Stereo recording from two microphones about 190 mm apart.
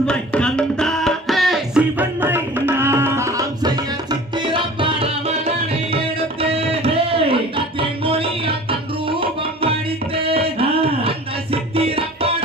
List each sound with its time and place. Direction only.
0.0 s music: 5° left (ahead or behind); by 3.7 s 15° right (ahead or behind)
4.1 s tabla: 25° right (ahead or behind)
6.4 s music: 30° right (ahead or behind)
9.0 s tabla: 30° right (ahead or behind)
10.2 s music: 30° right (ahead or behind)